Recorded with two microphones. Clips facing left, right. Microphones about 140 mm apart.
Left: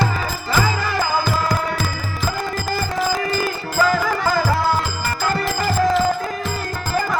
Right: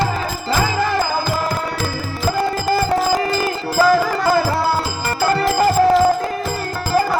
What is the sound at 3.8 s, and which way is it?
Music, 35° right (ahead or behind).